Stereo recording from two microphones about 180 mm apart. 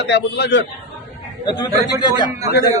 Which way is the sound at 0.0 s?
70° left (ahead or behind).